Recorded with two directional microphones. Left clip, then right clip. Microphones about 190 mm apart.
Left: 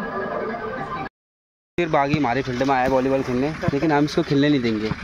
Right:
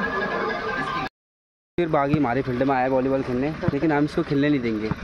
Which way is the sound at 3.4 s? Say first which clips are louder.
Left 2 dB; 40° left (ahead or behind).